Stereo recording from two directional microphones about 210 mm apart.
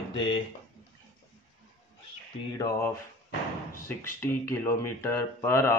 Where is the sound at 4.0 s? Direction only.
10° left (ahead or behind).